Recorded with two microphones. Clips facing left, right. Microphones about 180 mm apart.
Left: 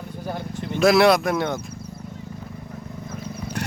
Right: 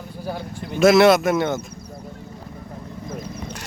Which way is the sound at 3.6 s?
60° left (ahead or behind).